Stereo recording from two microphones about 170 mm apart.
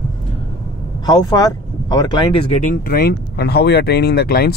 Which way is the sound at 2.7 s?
60° left (ahead or behind).